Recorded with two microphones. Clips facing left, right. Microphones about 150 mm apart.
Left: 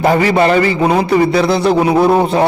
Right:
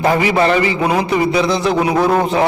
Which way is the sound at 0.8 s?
30° left (ahead or behind).